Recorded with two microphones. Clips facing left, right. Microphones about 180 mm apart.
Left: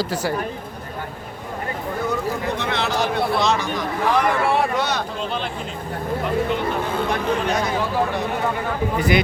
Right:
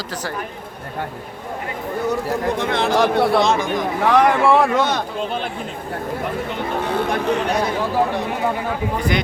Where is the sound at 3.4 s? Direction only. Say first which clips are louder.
Right 3 dB; 50° right (ahead or behind).